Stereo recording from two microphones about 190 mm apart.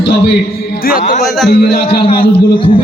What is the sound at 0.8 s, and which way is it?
Speech, 50° left (ahead or behind).